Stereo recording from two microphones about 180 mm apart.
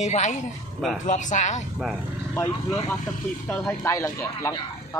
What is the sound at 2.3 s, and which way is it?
Speech, 15° left (ahead or behind).